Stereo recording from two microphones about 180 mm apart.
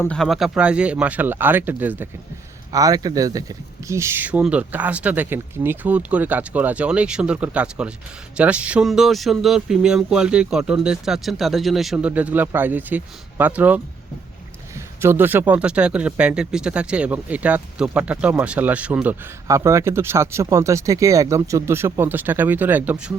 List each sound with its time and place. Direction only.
0.0 s speech: 5° left (ahead or behind)
15.0 s speech: 10° right (ahead or behind)